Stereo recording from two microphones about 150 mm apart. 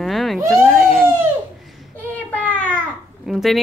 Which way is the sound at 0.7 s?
Centre (ahead or behind).